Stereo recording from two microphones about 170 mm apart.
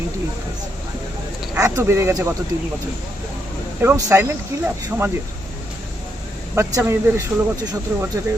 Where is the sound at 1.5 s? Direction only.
15° right (ahead or behind).